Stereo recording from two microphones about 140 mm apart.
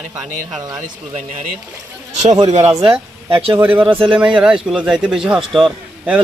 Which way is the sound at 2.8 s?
40° right (ahead or behind).